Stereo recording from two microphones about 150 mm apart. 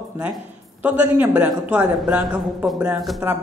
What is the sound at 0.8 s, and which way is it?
Speech, 10° right (ahead or behind).